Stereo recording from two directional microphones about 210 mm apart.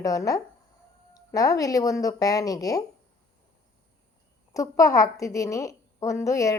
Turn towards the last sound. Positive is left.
turn(degrees=15)  # may be behind; listen again after turning